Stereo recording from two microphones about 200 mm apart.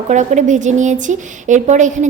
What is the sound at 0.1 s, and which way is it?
A woman's voice, 35° right (ahead or behind).